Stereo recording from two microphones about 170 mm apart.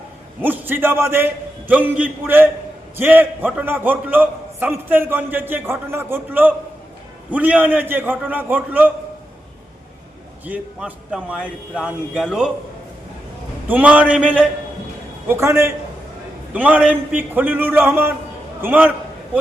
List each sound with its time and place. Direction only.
0.4 s a man's voice: 10° right (ahead or behind)
10.4 s speech: 10° right (ahead or behind)
13.7 s a man's voice: 10° right (ahead or behind)
18.6 s a sound: 10° right (ahead or behind)